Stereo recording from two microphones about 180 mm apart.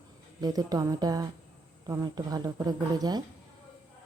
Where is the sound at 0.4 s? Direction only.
20° right (ahead or behind).